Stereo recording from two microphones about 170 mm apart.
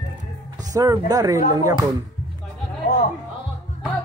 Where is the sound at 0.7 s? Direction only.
20° right (ahead or behind).